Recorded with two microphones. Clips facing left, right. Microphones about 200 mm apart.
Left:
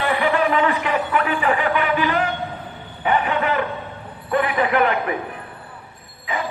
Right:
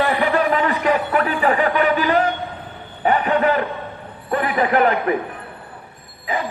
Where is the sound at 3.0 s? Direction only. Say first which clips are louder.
Right 3 dB; 40° right (ahead or behind).